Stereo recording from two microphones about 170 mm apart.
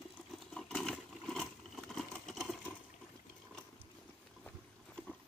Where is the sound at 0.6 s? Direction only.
5° left (ahead or behind).